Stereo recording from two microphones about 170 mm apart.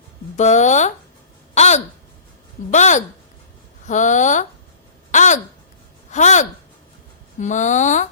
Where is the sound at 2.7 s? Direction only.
45° left (ahead or behind).